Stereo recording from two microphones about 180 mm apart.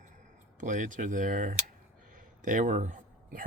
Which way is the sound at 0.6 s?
45° right (ahead or behind).